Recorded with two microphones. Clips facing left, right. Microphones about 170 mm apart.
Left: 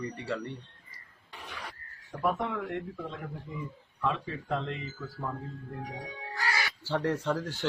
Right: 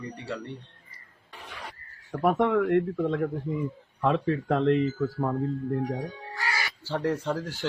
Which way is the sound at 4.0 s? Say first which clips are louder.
Right 8 dB; 60° right (ahead or behind).